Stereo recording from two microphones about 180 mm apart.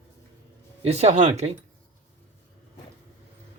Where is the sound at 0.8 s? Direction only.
35° right (ahead or behind).